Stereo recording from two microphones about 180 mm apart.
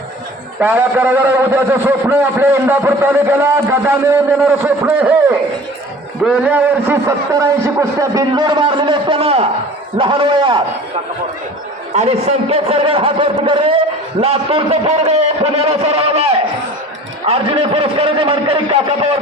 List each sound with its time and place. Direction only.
0.6 s a man's voice: 10° right (ahead or behind); by 10.6 s 25° right (ahead or behind)
11.9 s a man's voice: 35° right (ahead or behind)